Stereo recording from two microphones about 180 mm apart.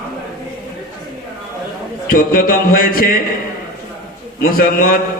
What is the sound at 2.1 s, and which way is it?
A man's voice, 50° left (ahead or behind).